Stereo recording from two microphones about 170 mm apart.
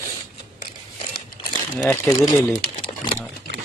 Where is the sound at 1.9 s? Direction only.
15° left (ahead or behind).